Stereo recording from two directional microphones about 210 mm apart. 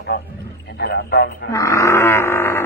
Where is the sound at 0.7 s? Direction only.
50° left (ahead or behind).